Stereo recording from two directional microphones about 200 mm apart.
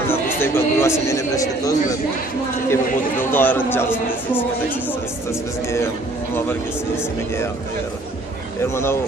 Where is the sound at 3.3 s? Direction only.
10° left (ahead or behind).